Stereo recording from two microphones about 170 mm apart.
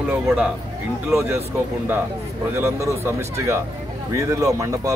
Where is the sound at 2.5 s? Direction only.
15° right (ahead or behind).